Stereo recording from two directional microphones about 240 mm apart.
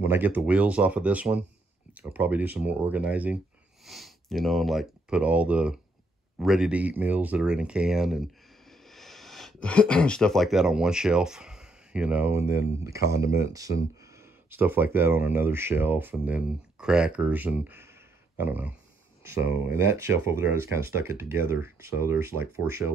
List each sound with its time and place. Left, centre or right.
0.0 s speech: centre